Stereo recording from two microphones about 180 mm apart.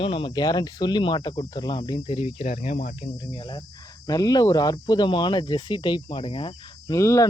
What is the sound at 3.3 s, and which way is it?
Speech, 25° left (ahead or behind).